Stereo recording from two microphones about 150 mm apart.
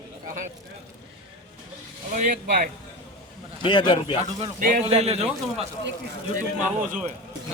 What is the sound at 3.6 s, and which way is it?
Speech, 30° left (ahead or behind).